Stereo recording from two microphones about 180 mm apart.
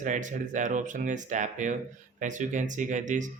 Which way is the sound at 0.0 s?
45° right (ahead or behind).